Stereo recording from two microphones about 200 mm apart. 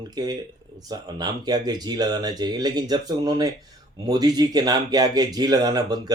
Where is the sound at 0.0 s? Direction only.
20° right (ahead or behind).